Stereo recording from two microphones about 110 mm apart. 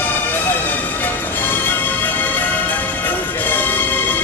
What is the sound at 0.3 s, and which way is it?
Music, 15° left (ahead or behind).